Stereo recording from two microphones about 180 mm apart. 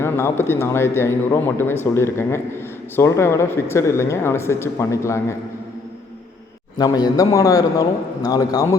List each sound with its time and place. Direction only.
0.0 s speech: 15° left (ahead or behind)
6.7 s a man's voice: 20° left (ahead or behind)